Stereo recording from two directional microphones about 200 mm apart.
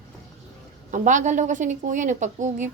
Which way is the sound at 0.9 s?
40° right (ahead or behind).